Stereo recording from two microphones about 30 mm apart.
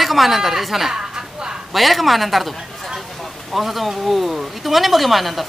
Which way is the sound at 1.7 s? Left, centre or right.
Centre.